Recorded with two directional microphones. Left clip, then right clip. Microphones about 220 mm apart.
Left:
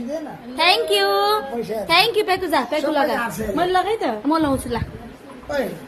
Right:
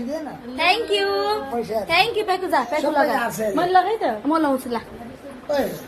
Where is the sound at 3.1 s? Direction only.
15° left (ahead or behind).